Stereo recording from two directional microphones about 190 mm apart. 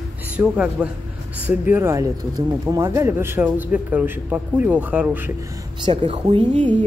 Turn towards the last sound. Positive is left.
turn(degrees=-30)  # may be behind; listen again after turning